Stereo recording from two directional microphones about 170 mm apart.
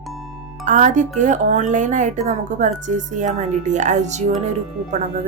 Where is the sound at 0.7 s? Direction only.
45° right (ahead or behind).